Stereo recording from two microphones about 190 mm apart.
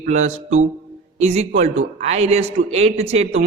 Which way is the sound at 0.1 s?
35° right (ahead or behind).